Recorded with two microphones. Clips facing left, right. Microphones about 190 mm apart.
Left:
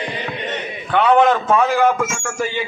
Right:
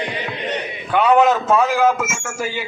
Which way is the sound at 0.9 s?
10° right (ahead or behind).